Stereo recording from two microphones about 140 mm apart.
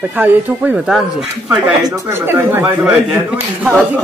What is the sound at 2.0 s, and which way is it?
Speech, 15° right (ahead or behind).